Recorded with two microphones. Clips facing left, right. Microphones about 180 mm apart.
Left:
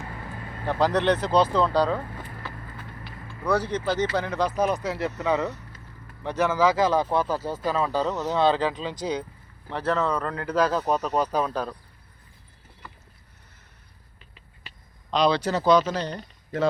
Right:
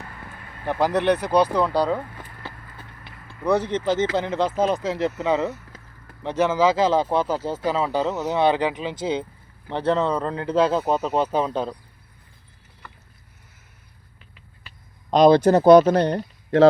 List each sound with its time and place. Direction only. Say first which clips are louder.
0.6 s speech: right 1 dB; 15° right (ahead or behind)
3.0 s speech: right 5 dB; 25° right (ahead or behind)
5.7 s a sound: right 2 dB; 90° right
6.2 s speech: right 3 dB; 20° right (ahead or behind)
15.1 s speech: right 8 dB; 50° right (ahead or behind); by 16.6 s 75° right (ahead or behind)